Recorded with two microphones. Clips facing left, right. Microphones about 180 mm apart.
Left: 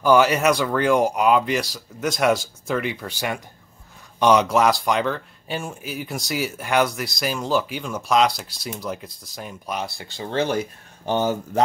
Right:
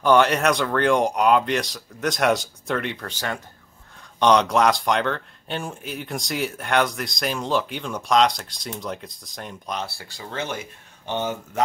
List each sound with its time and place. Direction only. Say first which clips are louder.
0.0 s speech: left 1 dB; 5° left (ahead or behind); by 11.6 s 40° left (ahead or behind)